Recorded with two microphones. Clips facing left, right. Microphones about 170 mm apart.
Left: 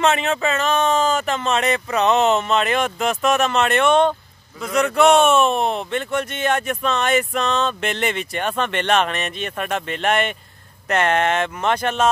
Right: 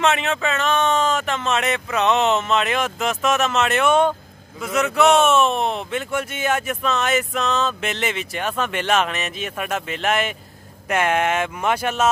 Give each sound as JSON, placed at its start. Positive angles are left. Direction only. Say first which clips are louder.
{"t": 0.0, "sound": "speech", "louder": "left 2 dB", "side_deg": 0}